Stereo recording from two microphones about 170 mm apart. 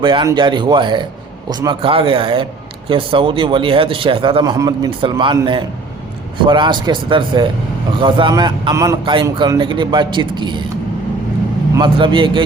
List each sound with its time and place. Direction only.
0.0 s speech: 30° right (ahead or behind)
11.8 s speech: 30° right (ahead or behind)